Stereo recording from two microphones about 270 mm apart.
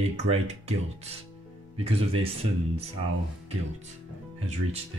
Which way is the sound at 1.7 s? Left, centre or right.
Right.